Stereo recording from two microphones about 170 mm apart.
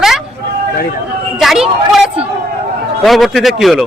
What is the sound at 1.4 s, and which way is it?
A woman's voice, centre (ahead or behind).